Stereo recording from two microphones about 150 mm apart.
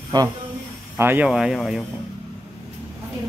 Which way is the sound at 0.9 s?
15° right (ahead or behind).